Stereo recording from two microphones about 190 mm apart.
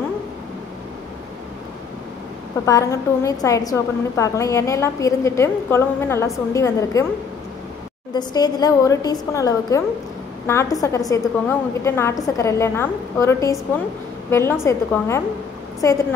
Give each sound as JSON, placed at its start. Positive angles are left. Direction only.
{"t": 2.6, "sound": "a woman's voice", "side_deg": 15}
{"t": 8.1, "sound": "a woman's voice", "side_deg": 20}